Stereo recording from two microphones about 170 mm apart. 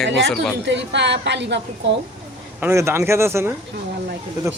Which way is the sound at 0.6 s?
90° right.